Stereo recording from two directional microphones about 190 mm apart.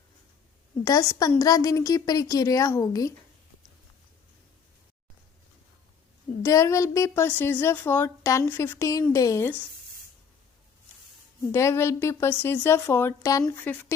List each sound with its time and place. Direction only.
0.9 s speech: 15° left (ahead or behind)
6.4 s speech: 15° left (ahead or behind)
11.5 s speech: 15° left (ahead or behind)